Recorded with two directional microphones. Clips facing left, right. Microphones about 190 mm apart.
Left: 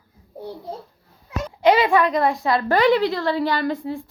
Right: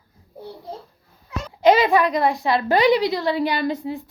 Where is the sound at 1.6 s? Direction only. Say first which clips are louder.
Right 1 dB; 20° right (ahead or behind).